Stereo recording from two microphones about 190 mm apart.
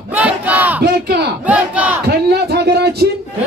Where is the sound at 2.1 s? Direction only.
55° right (ahead or behind).